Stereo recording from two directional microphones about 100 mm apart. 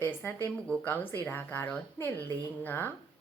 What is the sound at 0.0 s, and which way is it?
A woman's voice, 20° left (ahead or behind).